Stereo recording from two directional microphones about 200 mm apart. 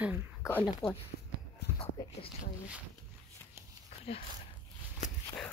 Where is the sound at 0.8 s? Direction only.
Centre (ahead or behind).